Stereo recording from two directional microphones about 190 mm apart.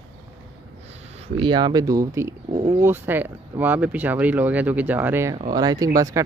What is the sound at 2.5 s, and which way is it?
Speech, 35° right (ahead or behind).